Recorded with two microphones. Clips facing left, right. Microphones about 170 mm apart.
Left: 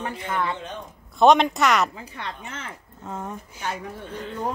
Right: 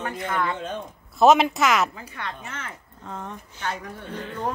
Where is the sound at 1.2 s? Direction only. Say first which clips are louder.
Even; 5° right (ahead or behind).